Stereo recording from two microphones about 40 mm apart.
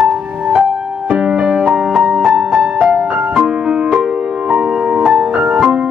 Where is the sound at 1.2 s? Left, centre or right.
Right.